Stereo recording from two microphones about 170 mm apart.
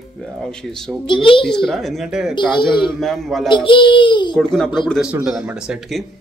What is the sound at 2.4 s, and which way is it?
Speech, 25° left (ahead or behind).